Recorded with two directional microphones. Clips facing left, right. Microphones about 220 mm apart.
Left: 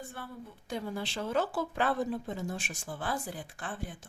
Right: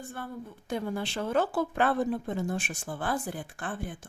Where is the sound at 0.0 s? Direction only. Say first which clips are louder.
Right 4 dB; 50° right (ahead or behind).